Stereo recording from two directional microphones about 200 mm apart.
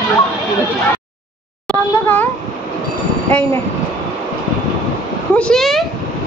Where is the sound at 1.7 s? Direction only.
10° left (ahead or behind).